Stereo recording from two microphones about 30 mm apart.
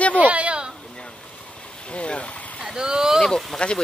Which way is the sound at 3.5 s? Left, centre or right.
Centre.